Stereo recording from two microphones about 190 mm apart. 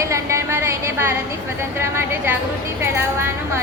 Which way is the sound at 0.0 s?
15° right (ahead or behind).